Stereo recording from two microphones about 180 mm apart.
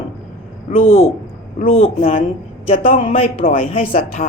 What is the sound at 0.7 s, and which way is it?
Speech, 50° left (ahead or behind).